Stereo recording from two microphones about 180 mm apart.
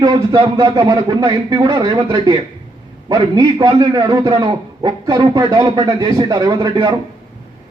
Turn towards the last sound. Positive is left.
turn(degrees=-20)  # may be behind; listen again after turning